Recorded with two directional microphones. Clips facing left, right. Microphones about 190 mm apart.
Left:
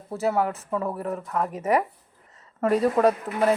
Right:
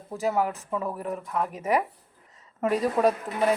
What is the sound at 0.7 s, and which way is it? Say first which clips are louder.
Speech: left 2 dB; 15° left (ahead or behind).